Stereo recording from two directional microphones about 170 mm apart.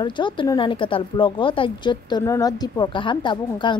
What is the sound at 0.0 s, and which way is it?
Speech, 25° left (ahead or behind).